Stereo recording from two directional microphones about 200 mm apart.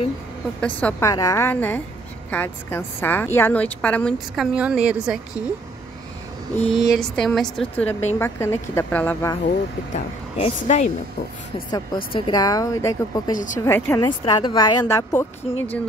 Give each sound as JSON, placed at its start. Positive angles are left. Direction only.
{"t": 0.6, "sound": "a woman's voice", "side_deg": 5}
{"t": 4.6, "sound": "a woman's voice", "side_deg": -5}
{"t": 6.5, "sound": "a woman's voice", "side_deg": 30}
{"t": 6.9, "sound": "a woman's voice", "side_deg": 0}
{"t": 9.9, "sound": "a woman's voice", "side_deg": 35}
{"t": 12.1, "sound": "a woman's voice", "side_deg": 20}
{"t": 14.0, "sound": "speech", "side_deg": 25}